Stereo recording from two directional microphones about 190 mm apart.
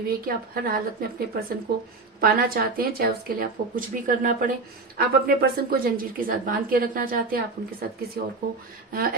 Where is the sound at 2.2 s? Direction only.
50° right (ahead or behind).